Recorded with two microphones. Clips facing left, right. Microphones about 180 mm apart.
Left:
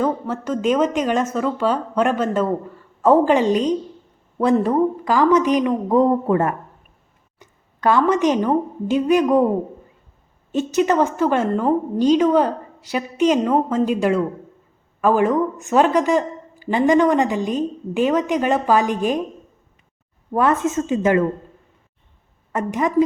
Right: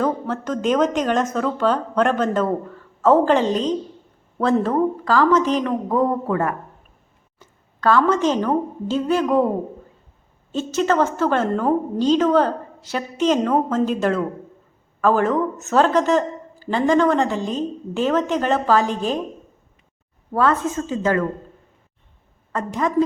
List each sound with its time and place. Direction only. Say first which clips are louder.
0.0 s a woman's voice: left 1 dB; 10° left (ahead or behind)
10.5 s speech: left 2 dB; 15° left (ahead or behind)
20.3 s a woman's voice: left 1 dB; 20° left (ahead or behind)
22.5 s speech: left 2 dB; 15° left (ahead or behind)